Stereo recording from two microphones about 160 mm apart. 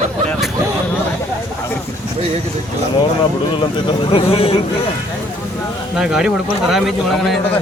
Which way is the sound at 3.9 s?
35° left (ahead or behind).